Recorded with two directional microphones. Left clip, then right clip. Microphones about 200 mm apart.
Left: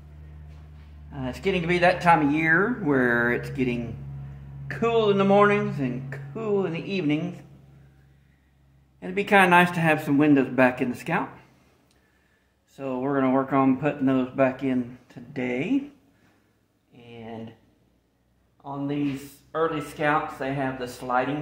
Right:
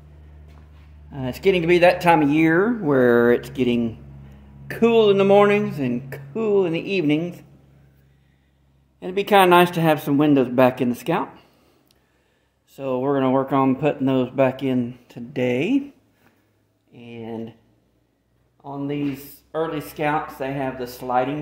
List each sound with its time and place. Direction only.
1.1 s speech: 60° right (ahead or behind); by 3.8 s 40° right (ahead or behind)
4.6 s speech: 60° right (ahead or behind)
9.0 s speech: 40° right (ahead or behind)
12.7 s speech: 45° right (ahead or behind)
16.9 s speech: 65° right (ahead or behind)
18.6 s speech: 55° right (ahead or behind)